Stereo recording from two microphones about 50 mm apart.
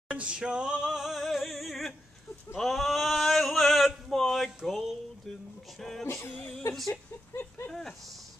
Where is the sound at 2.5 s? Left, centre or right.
Centre.